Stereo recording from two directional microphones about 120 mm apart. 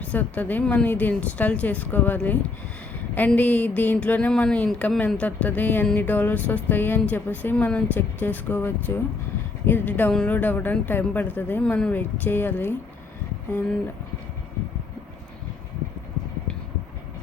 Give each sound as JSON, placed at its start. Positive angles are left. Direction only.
{"t": 0.0, "sound": "speech", "side_deg": 10}